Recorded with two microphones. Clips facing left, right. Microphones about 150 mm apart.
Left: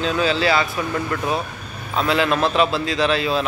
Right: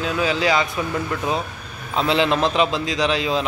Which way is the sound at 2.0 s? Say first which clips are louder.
Even; 25° right (ahead or behind).